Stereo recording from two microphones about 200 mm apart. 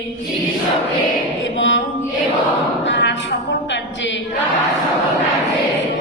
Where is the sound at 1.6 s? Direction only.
65° left (ahead or behind).